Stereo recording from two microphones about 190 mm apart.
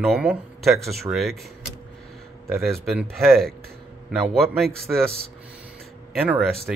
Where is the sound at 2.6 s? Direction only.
Centre (ahead or behind).